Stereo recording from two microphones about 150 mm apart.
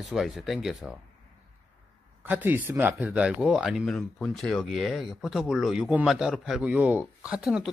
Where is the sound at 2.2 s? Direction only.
10° right (ahead or behind).